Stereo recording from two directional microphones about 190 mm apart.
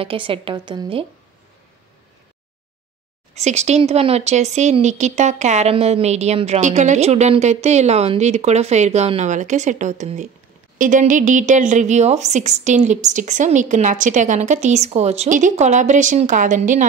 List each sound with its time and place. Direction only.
0.0 s a woman's voice: 30° right (ahead or behind)
3.3 s speech: 35° right (ahead or behind)